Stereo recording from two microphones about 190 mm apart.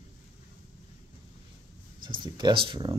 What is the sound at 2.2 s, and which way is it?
Speech, 25° right (ahead or behind).